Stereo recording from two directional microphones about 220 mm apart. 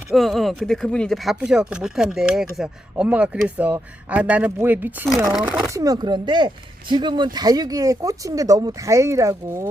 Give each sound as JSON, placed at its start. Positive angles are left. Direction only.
{"t": 0.1, "sound": "speech", "side_deg": 0}
{"t": 5.7, "sound": "speech", "side_deg": -15}